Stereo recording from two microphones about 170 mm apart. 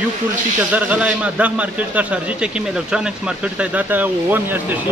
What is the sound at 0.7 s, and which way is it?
Speech, 5° right (ahead or behind).